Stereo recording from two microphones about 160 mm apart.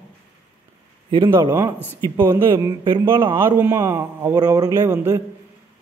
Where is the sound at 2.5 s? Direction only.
30° right (ahead or behind).